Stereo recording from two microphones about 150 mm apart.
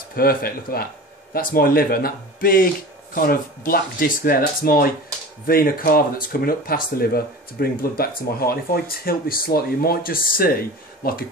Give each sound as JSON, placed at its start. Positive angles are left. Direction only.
{"t": 0.1, "sound": "speech", "side_deg": 90}
{"t": 9.0, "sound": "speech", "side_deg": 80}
{"t": 11.0, "sound": "speech", "side_deg": 90}